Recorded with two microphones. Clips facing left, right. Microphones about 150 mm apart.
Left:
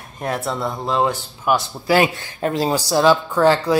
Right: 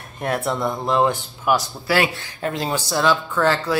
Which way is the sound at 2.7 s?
10° left (ahead or behind).